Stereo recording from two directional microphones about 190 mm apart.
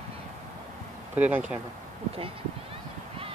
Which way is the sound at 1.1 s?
10° right (ahead or behind).